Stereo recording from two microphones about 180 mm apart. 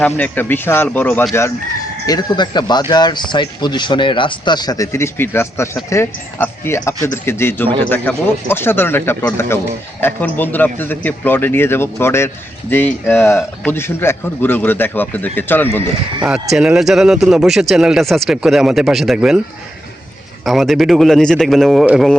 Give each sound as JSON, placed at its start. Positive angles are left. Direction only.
{"t": 0.0, "sound": "a man's voice", "side_deg": 10}
{"t": 16.2, "sound": "speech", "side_deg": -5}
{"t": 20.4, "sound": "speech", "side_deg": 0}